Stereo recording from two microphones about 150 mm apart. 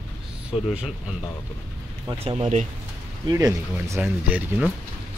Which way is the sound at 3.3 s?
20° right (ahead or behind).